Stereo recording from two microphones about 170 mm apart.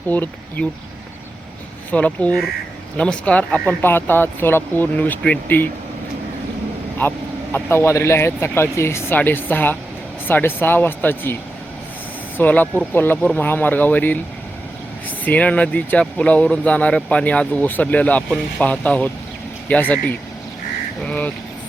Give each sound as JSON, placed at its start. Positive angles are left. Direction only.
{"t": 0.1, "sound": "speech", "side_deg": 10}
{"t": 1.9, "sound": "speech", "side_deg": 10}
{"t": 7.5, "sound": "speech", "side_deg": 15}
{"t": 12.4, "sound": "speech", "side_deg": 10}
{"t": 15.2, "sound": "speech", "side_deg": 10}